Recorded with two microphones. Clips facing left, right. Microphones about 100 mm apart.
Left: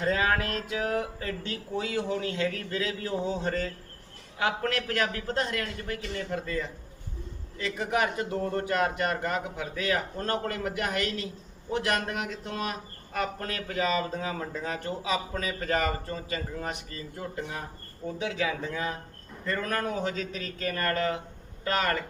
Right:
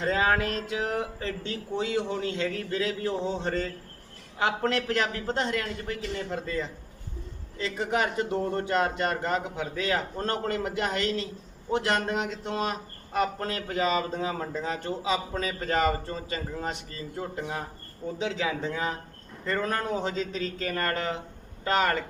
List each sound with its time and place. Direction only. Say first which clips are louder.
0.0 s speech: right 2 dB; 25° right (ahead or behind)